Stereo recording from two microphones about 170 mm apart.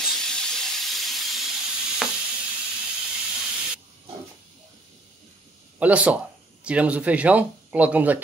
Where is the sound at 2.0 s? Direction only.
5° right (ahead or behind).